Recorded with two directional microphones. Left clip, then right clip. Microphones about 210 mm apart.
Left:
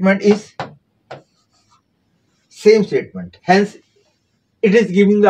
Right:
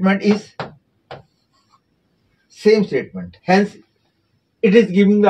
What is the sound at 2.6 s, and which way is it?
Speech, 20° left (ahead or behind).